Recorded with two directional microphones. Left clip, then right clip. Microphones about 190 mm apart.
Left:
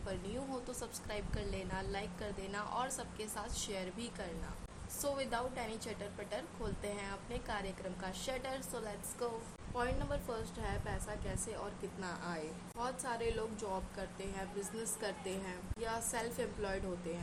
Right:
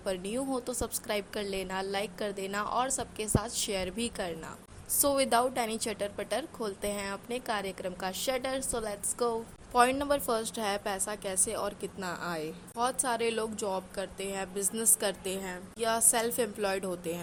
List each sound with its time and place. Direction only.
0.0 s a woman's voice: 45° right (ahead or behind)